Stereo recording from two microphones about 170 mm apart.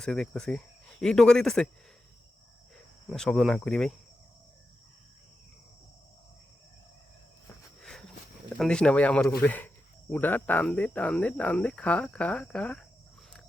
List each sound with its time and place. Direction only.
0.0 s speech: 5° left (ahead or behind)
2.7 s speech: 5° left (ahead or behind)
7.8 s a sound: 5° left (ahead or behind)
8.5 s speech: 5° left (ahead or behind)